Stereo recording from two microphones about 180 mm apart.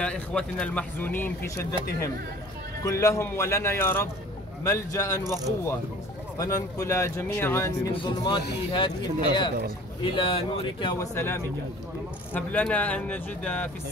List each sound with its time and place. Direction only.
0.0 s speech: 5° left (ahead or behind)
2.8 s speech: 15° left (ahead or behind)
6.3 s speech: 20° left (ahead or behind)
7.9 s speech: 25° left (ahead or behind)
11.1 s speech: 15° left (ahead or behind)